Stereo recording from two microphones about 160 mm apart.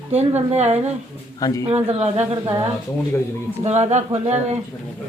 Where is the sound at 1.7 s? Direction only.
45° right (ahead or behind).